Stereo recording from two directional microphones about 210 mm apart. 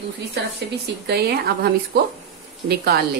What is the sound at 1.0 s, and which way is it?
Speech, 50° right (ahead or behind).